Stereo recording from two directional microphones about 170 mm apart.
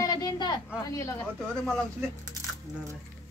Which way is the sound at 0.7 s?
15° left (ahead or behind).